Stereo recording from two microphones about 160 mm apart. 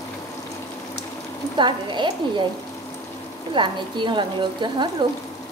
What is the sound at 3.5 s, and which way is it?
Speech, 30° right (ahead or behind).